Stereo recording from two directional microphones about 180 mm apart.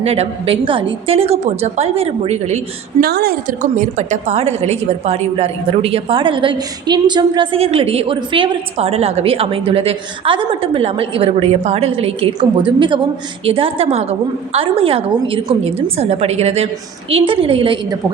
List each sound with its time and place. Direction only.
0.0 s a woman's voice: 35° right (ahead or behind)
3.0 s a woman's voice: 60° right (ahead or behind)
3.6 s a woman's voice: 40° right (ahead or behind)